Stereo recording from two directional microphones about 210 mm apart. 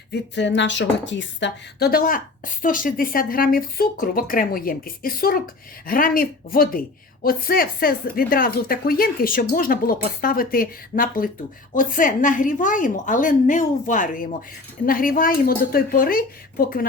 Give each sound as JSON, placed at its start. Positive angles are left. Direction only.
{"t": 0.1, "sound": "a woman's voice", "side_deg": 55}